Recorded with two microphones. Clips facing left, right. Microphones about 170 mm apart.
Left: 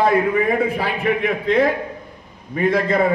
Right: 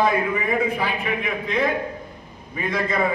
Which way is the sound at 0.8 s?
55° left (ahead or behind).